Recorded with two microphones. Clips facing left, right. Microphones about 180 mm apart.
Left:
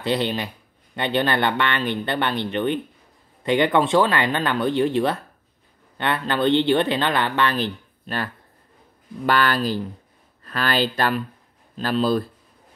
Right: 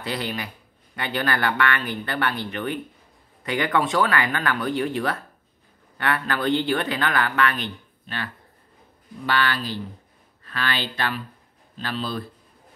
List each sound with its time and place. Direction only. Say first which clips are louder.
0.0 s speech: left 6 dB; 25° left (ahead or behind); by 12.3 s 45° left (ahead or behind)